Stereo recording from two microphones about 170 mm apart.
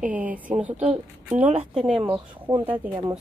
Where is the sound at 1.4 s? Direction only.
35° right (ahead or behind).